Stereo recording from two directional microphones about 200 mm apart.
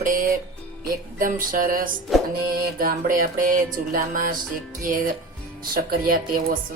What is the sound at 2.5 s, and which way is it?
A woman's voice, 45° right (ahead or behind).